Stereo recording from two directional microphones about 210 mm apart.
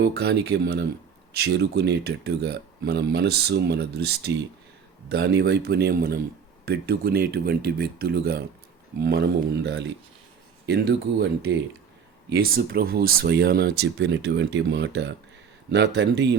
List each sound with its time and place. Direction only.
0.0 s speech: 50° right (ahead or behind)